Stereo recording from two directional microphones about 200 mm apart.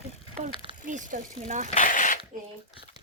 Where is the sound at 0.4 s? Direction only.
40° right (ahead or behind).